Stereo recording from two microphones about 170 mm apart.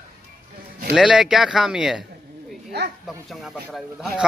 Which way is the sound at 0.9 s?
5° right (ahead or behind).